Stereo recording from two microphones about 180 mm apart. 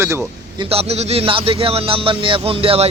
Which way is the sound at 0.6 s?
35° right (ahead or behind).